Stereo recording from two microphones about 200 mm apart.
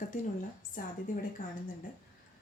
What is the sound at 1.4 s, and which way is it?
Speech, 40° left (ahead or behind).